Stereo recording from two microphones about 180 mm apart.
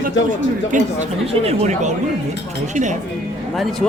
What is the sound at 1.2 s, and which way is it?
Speech, 35° right (ahead or behind).